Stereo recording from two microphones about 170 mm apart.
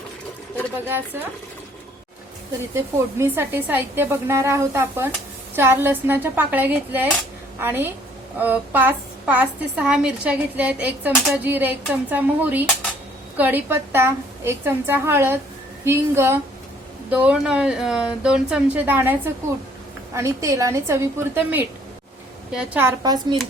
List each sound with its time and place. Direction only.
0.9 s a woman's voice: 10° right (ahead or behind)
2.7 s a woman's voice: 15° right (ahead or behind)
23.0 s a woman's voice: 25° right (ahead or behind)